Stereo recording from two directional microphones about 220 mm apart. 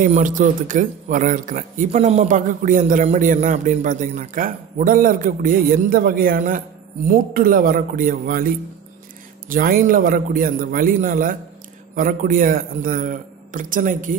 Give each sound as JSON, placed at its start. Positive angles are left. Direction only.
{"t": 0.0, "sound": "speech", "side_deg": -35}